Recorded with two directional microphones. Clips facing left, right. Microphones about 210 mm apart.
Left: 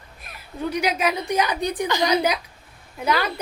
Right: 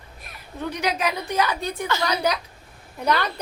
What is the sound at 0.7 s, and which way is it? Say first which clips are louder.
A woman's voice: left 2 dB; 10° left (ahead or behind).